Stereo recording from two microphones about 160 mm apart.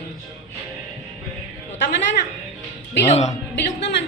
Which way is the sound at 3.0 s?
45° left (ahead or behind).